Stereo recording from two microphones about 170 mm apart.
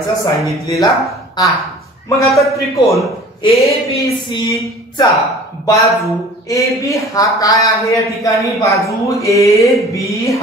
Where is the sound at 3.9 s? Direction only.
20° left (ahead or behind).